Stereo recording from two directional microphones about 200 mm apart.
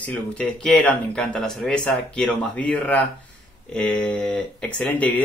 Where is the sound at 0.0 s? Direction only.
5° left (ahead or behind).